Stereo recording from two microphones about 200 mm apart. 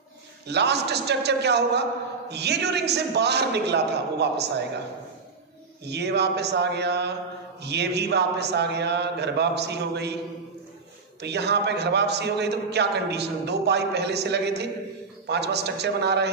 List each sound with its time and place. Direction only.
0.5 s a man's voice: 55° right (ahead or behind)
5.9 s a man's voice: 55° right (ahead or behind)
11.1 s a man's voice: 55° right (ahead or behind)